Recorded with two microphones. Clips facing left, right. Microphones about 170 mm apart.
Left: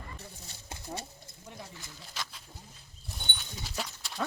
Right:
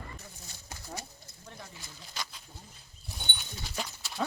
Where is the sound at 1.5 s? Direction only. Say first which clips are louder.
Left 2 dB; 10° left (ahead or behind).